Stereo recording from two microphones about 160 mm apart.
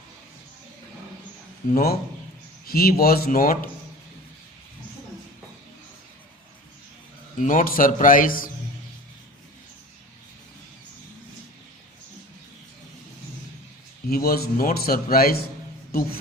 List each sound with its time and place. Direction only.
1.7 s a man's voice: 70° left (ahead or behind)
7.3 s a man's voice: 55° left (ahead or behind)
14.1 s a man's voice: 70° left (ahead or behind)